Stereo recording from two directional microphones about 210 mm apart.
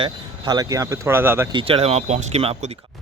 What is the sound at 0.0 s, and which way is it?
Speech, 20° right (ahead or behind).